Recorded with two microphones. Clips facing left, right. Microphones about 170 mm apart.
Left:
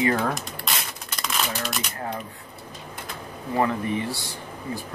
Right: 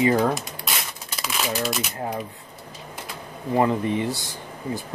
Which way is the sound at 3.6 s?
20° right (ahead or behind).